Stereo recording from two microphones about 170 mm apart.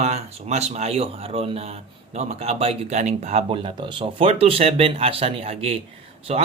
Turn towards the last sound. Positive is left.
turn(degrees=-35)  # may be behind; listen again after turning